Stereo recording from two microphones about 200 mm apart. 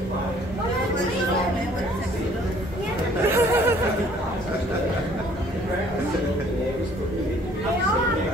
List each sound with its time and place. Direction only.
3.3 s chatter: 10° right (ahead or behind)